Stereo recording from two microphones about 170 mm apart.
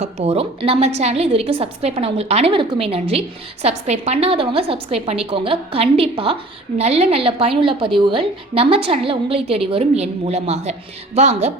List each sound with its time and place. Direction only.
0.0 s a woman's voice: 40° right (ahead or behind)